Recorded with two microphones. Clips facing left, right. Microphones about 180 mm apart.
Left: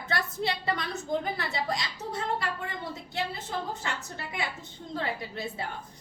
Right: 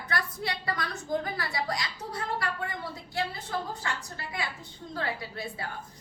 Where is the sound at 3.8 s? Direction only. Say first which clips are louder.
Even; 25° left (ahead or behind).